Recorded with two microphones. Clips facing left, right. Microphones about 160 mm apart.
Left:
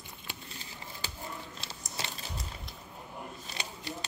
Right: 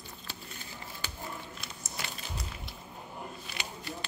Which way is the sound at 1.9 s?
30° left (ahead or behind).